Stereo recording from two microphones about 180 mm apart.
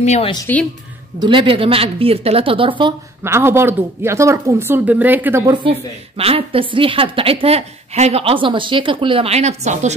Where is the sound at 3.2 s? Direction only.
15° right (ahead or behind).